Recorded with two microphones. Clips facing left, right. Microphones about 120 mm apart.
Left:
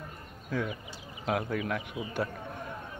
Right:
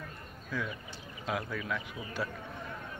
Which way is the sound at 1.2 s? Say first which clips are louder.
Left 5 dB; 50° left (ahead or behind).